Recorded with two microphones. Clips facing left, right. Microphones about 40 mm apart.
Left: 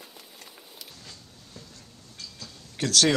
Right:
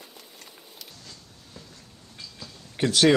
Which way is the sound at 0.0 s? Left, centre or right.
Centre.